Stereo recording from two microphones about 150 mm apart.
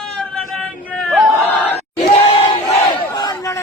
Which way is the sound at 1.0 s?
5° left (ahead or behind).